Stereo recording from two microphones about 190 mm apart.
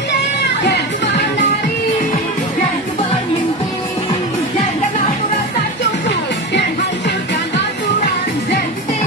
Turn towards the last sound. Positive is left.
turn(degrees=65)  # may be behind; listen again after turning